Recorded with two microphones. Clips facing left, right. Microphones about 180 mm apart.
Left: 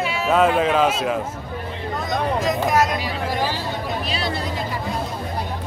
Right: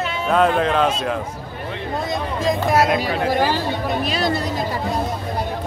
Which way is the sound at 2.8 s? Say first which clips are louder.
Right 4 dB; 60° right (ahead or behind).